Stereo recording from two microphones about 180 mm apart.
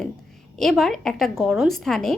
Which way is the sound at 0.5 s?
Centre (ahead or behind).